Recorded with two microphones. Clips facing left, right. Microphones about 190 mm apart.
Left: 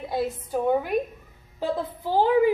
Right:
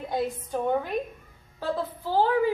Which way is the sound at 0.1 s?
5° left (ahead or behind).